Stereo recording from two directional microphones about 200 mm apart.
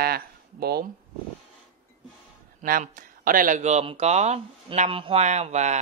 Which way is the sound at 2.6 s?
45° right (ahead or behind).